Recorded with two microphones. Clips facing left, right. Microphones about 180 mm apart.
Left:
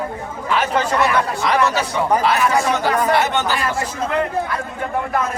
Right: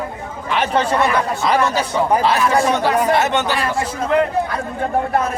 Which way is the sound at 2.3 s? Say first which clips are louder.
Right 1 dB; 30° right (ahead or behind).